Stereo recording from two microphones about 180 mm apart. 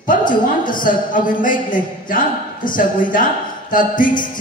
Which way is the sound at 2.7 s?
50° left (ahead or behind).